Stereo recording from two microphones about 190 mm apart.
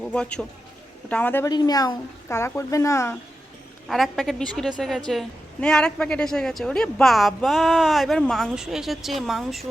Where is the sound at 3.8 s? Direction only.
Centre (ahead or behind).